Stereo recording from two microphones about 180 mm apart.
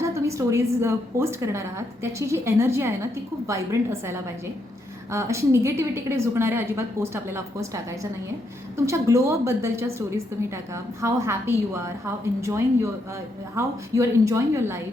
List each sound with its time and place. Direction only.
0.0 s a woman's voice: 15° right (ahead or behind)